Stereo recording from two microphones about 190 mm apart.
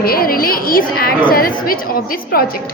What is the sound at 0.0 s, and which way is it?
A woman's voice, 50° left (ahead or behind).